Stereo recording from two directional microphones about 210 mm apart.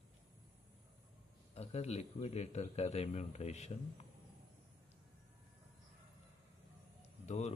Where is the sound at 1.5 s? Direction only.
30° left (ahead or behind).